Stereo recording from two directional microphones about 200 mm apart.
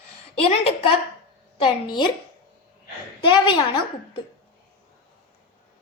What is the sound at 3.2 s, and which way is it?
Speech, 25° left (ahead or behind).